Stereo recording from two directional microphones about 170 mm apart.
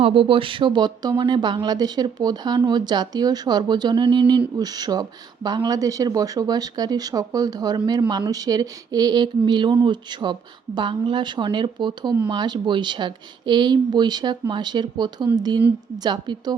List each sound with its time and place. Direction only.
0.0 s speech: 30° right (ahead or behind)